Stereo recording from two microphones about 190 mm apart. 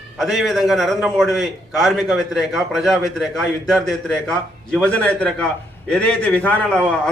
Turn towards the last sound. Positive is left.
turn(degrees=5)  # may be behind; listen again after turning